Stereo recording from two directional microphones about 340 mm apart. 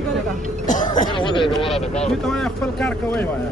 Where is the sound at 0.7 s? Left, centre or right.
Left.